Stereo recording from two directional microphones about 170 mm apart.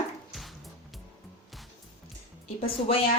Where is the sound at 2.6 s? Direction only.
35° left (ahead or behind).